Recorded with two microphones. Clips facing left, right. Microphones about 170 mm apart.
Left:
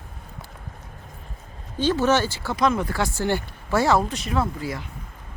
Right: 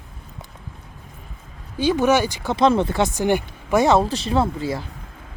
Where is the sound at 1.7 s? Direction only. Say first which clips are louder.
Right 3 dB; 15° right (ahead or behind); by 4.8 s 30° right (ahead or behind).